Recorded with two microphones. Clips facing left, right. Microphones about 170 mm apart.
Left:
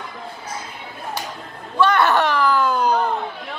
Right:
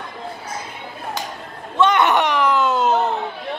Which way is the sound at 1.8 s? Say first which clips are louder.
Right 1 dB; 20° right (ahead or behind).